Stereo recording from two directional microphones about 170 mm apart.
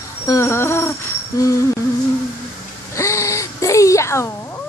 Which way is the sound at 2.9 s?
15° left (ahead or behind).